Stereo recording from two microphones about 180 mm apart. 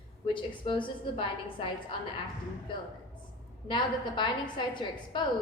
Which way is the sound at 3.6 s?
25° left (ahead or behind).